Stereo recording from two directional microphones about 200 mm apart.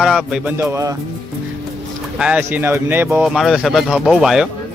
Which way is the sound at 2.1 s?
5° right (ahead or behind).